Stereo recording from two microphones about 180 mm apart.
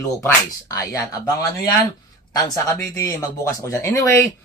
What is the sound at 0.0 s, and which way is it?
Speech, 20° left (ahead or behind).